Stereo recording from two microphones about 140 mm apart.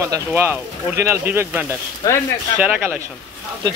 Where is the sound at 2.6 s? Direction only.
10° right (ahead or behind).